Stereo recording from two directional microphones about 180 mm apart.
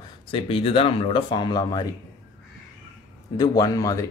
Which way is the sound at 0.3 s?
30° left (ahead or behind).